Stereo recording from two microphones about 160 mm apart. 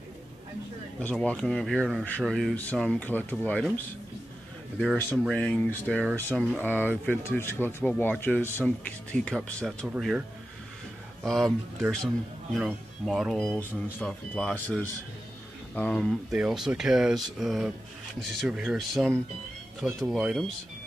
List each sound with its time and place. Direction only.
0.9 s speech: 5° left (ahead or behind)
5.1 s speech: 5° left (ahead or behind)
11.2 s speech: centre (ahead or behind)